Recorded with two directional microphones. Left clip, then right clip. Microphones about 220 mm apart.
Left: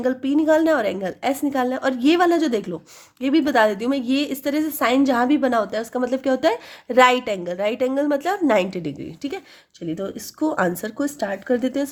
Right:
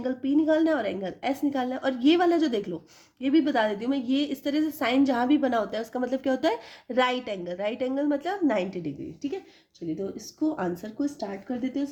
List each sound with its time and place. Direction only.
0.0 s a woman's voice: 30° left (ahead or behind)
10.4 s speech: 40° left (ahead or behind)